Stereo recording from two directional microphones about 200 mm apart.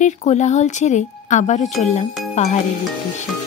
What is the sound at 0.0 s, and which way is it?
Speech, 35° left (ahead or behind).